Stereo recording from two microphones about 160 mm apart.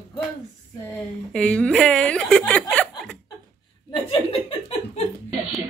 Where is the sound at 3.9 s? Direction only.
35° left (ahead or behind).